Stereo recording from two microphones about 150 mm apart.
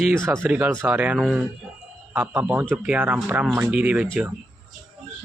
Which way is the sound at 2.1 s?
15° right (ahead or behind).